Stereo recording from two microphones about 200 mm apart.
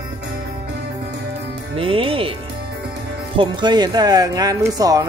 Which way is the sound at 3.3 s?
20° right (ahead or behind).